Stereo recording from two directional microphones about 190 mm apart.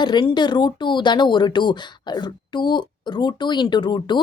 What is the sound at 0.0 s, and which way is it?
Speech, 25° left (ahead or behind).